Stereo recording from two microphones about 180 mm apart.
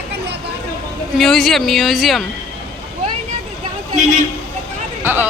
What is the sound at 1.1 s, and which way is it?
Speech, centre (ahead or behind).